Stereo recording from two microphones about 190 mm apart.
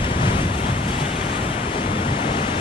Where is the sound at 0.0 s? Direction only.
30° left (ahead or behind).